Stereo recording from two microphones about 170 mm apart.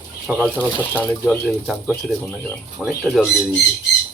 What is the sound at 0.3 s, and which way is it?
Speech, centre (ahead or behind).